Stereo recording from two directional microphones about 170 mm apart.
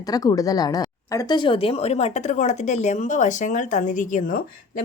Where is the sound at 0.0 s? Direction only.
20° left (ahead or behind).